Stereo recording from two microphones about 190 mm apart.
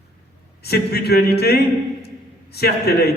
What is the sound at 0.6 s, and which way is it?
A man's voice, 55° left (ahead or behind).